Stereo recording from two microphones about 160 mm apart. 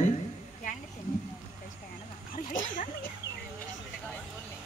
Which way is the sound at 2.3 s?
55° left (ahead or behind).